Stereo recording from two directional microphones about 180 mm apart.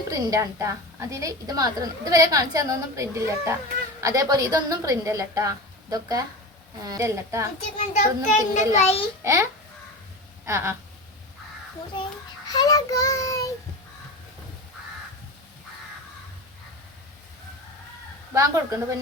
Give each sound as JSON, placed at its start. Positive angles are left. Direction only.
{"t": 0.1, "sound": "a woman's voice", "side_deg": -20}
{"t": 7.8, "sound": "a child's voice", "side_deg": 40}
{"t": 9.2, "sound": "a woman's voice", "side_deg": -15}
{"t": 12.5, "sound": "child singing", "side_deg": 20}
{"t": 18.3, "sound": "a woman's voice", "side_deg": -15}